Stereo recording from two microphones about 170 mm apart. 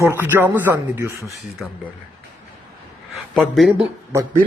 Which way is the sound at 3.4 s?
Centre (ahead or behind).